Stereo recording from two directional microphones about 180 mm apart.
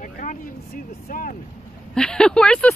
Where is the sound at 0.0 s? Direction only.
45° left (ahead or behind).